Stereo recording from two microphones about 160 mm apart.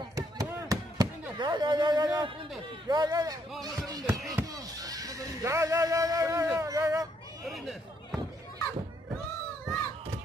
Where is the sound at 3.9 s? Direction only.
25° right (ahead or behind).